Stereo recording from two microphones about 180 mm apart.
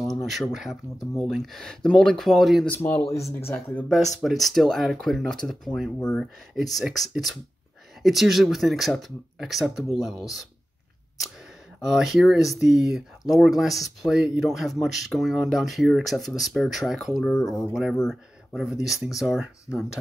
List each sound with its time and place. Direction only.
0.0 s speech: centre (ahead or behind)
2.8 s speech: 15° left (ahead or behind)
4.1 s speech: centre (ahead or behind)
11.8 s speech: centre (ahead or behind)